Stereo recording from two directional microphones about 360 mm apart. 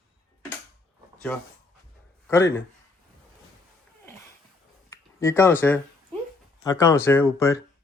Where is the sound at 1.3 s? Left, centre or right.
Centre.